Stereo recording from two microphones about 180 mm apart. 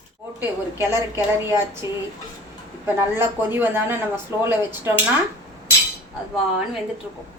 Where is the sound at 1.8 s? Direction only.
15° right (ahead or behind).